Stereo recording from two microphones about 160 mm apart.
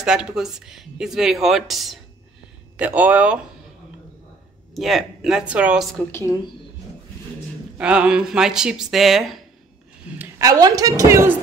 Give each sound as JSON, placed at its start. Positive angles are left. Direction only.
{"t": 0.0, "sound": "speech", "side_deg": -5}
{"t": 4.7, "sound": "speech", "side_deg": 0}
{"t": 5.9, "sound": "a woman's voice", "side_deg": 15}
{"t": 7.7, "sound": "speech", "side_deg": -5}
{"t": 10.1, "sound": "a woman's voice", "side_deg": -20}